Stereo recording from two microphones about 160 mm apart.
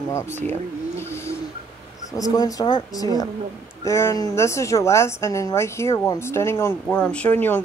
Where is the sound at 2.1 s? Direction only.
20° left (ahead or behind).